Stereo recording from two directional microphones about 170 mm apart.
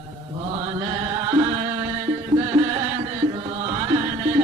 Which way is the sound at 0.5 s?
30° right (ahead or behind).